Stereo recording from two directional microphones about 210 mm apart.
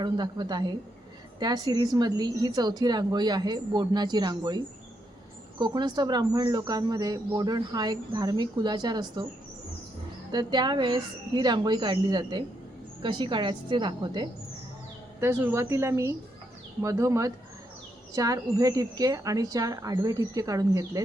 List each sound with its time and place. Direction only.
0.0 s speech: 20° right (ahead or behind)
10.3 s speech: 20° right (ahead or behind)
15.2 s speech: 10° right (ahead or behind)